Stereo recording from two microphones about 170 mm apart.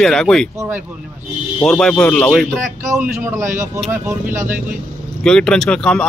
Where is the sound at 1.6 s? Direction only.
5° left (ahead or behind).